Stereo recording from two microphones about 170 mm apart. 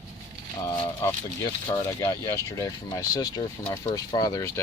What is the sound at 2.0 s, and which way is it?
Speech, 20° left (ahead or behind).